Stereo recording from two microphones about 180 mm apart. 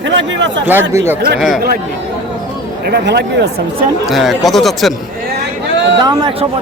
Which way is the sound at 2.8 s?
65° right (ahead or behind).